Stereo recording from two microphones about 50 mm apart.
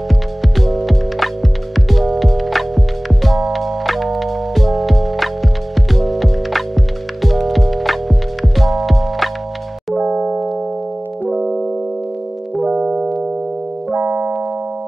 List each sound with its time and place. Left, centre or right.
0.4 s music: centre
10.1 s music: centre
11.2 s music: centre
12.6 s music: right
13.9 s keyboard: right